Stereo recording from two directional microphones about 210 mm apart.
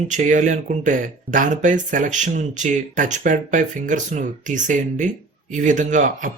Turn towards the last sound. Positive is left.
turn(degrees=-35)  # may be behind; listen again after turning